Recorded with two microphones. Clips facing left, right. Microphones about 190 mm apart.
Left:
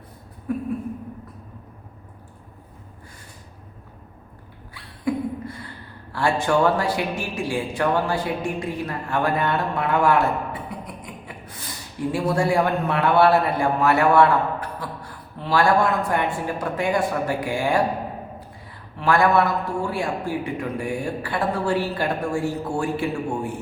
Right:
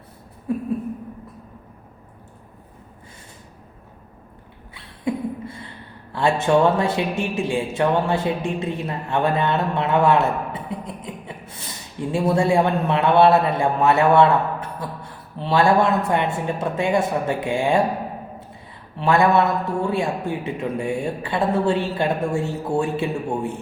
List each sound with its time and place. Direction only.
4.7 s a sound: 25° right (ahead or behind)
6.1 s speech: 20° right (ahead or behind)
18.9 s a man's voice: 25° right (ahead or behind)